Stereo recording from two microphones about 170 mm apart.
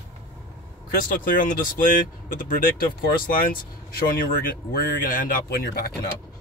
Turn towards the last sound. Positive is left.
turn(degrees=60)  # may be behind; listen again after turning